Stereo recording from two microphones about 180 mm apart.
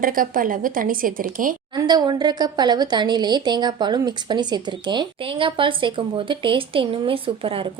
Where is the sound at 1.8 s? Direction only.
25° right (ahead or behind).